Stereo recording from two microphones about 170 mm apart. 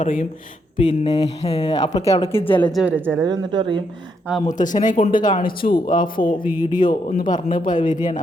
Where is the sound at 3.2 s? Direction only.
25° right (ahead or behind).